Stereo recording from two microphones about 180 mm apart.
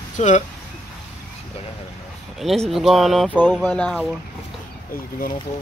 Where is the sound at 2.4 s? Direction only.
Centre (ahead or behind).